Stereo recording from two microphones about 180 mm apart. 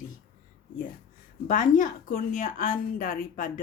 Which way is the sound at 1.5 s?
45° left (ahead or behind).